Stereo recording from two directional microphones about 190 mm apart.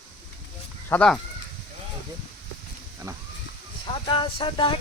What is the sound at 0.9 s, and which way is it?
Speech, 5° left (ahead or behind).